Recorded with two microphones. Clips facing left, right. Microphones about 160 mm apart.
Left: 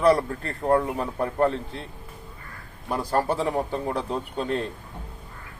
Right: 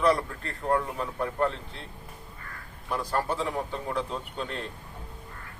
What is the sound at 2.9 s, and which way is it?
Speech, 35° left (ahead or behind).